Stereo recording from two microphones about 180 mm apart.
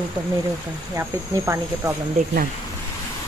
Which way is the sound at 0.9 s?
15° right (ahead or behind).